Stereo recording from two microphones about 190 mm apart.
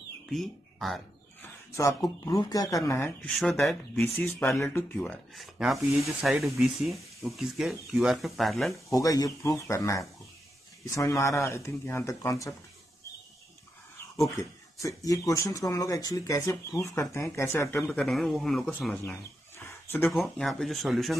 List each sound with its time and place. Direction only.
0.3 s speech: centre (ahead or behind)
1.7 s speech: 15° left (ahead or behind); by 8.9 s centre (ahead or behind)
8.9 s speech: 20° left (ahead or behind)
14.3 s speech: 15° left (ahead or behind)
19.6 s a sound: 15° left (ahead or behind)
20.1 s speech: centre (ahead or behind)